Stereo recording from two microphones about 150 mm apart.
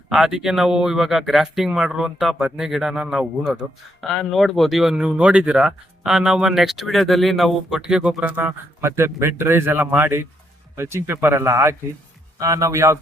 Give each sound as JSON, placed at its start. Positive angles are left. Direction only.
{"t": 0.1, "sound": "speech", "side_deg": -5}